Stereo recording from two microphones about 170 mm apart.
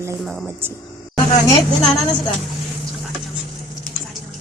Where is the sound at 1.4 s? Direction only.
20° left (ahead or behind).